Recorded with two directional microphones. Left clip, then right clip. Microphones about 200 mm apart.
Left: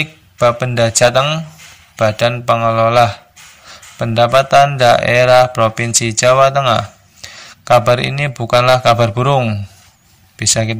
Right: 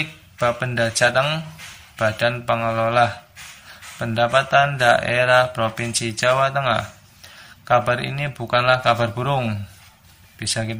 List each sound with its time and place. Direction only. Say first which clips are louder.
0.0 s speech: left 8 dB; 35° left (ahead or behind)